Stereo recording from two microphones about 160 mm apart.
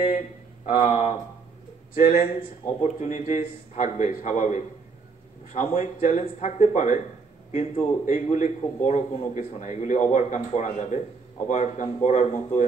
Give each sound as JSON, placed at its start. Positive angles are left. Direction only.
{"t": 0.7, "sound": "a man's voice", "side_deg": 45}
{"t": 2.8, "sound": "a man's voice", "side_deg": 50}